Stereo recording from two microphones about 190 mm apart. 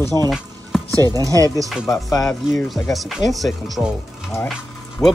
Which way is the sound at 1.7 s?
Centre (ahead or behind).